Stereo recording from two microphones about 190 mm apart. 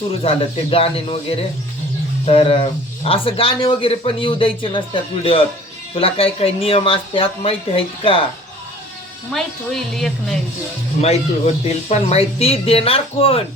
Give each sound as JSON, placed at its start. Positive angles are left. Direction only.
{"t": 0.1, "sound": "speech", "side_deg": 30}
{"t": 5.9, "sound": "speech", "side_deg": 30}
{"t": 9.3, "sound": "a woman's voice", "side_deg": 0}
{"t": 11.0, "sound": "speech", "side_deg": 35}